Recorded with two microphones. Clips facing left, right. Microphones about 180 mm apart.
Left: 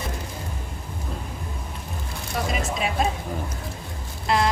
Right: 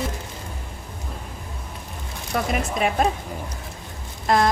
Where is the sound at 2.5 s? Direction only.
55° right (ahead or behind).